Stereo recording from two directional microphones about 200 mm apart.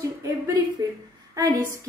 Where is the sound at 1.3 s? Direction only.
15° right (ahead or behind).